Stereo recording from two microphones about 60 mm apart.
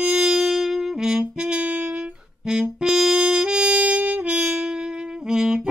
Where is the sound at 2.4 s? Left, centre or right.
Centre.